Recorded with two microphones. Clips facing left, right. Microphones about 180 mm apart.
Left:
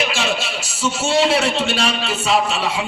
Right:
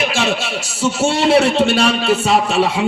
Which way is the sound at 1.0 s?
55° right (ahead or behind).